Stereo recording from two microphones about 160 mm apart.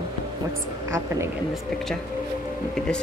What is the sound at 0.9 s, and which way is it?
Speech, 20° right (ahead or behind).